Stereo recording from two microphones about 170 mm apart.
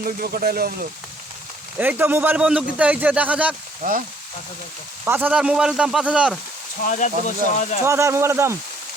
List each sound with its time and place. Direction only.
0.0 s speech: 60° right (ahead or behind)
1.8 s a man's voice: 10° right (ahead or behind)
3.8 s speech: 55° right (ahead or behind)
5.0 s speech: 10° right (ahead or behind)
6.8 s speech: 45° left (ahead or behind)
7.9 s a man's voice: 15° right (ahead or behind)